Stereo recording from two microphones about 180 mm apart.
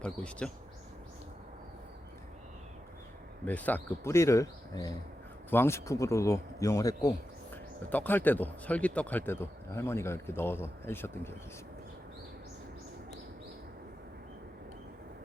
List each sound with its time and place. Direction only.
0.0 s speech: 5° left (ahead or behind)
3.4 s a man's voice: 10° left (ahead or behind)